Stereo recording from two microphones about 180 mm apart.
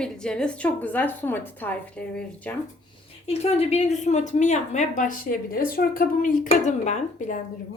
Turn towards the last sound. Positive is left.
turn(degrees=40)  # may be behind; listen again after turning